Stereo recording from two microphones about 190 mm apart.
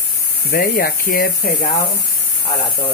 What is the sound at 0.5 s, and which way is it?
Speech, 50° left (ahead or behind).